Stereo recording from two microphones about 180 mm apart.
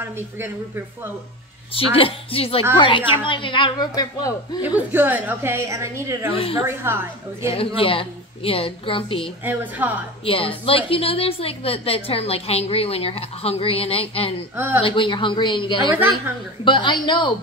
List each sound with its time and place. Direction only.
0.0 s a woman's voice: 10° right (ahead or behind)
1.7 s a woman's voice: 30° left (ahead or behind)
4.6 s a woman's voice: 10° right (ahead or behind)
6.3 s a woman's voice: 30° left (ahead or behind)
6.8 s a woman's voice: 15° right (ahead or behind)
7.4 s a woman's voice: 30° left (ahead or behind)
9.4 s a woman's voice: 10° right (ahead or behind)
10.2 s a woman's voice: 30° left (ahead or behind)